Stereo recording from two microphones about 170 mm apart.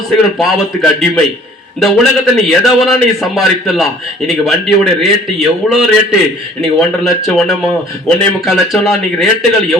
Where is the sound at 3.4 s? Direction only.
Centre (ahead or behind).